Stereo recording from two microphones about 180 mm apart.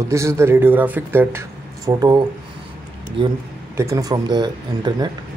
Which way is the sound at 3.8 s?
20° right (ahead or behind).